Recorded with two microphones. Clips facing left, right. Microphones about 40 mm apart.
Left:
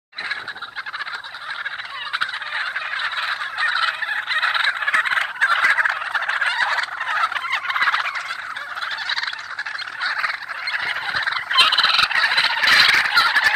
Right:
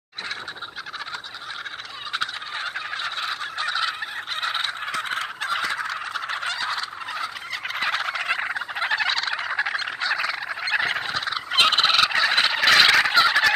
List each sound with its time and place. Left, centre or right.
2.1 s fowl: left
6.3 s gobble: left
6.6 s gobble: left
7.7 s fowl: left
11.1 s gobble: left